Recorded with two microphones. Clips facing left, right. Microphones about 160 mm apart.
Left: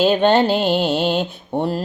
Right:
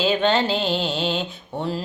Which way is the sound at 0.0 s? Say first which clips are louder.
Left 5 dB; 55° left (ahead or behind).